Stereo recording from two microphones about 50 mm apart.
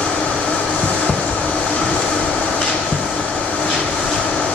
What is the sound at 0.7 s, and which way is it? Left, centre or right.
Train, left.